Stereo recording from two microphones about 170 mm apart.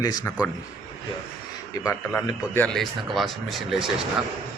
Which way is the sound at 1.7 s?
15° left (ahead or behind).